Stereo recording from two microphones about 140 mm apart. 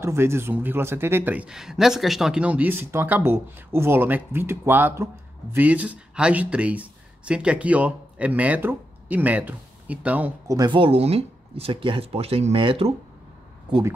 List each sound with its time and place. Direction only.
0.0 s speech: 20° right (ahead or behind)
10.5 s speech: 30° right (ahead or behind)